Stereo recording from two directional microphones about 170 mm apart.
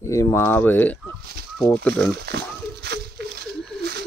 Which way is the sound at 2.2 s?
75° right (ahead or behind).